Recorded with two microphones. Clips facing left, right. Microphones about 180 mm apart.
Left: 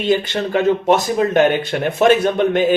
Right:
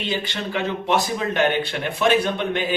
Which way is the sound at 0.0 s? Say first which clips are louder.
Left 9 dB; 50° left (ahead or behind).